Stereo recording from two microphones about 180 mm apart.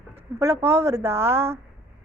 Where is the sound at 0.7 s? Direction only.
15° right (ahead or behind).